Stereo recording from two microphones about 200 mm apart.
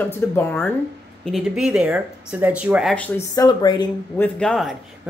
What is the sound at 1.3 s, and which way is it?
Speech, 5° right (ahead or behind).